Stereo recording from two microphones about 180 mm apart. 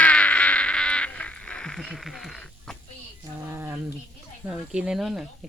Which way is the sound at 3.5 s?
10° right (ahead or behind).